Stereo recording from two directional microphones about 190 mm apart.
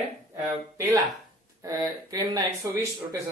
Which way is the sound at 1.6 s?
20° right (ahead or behind).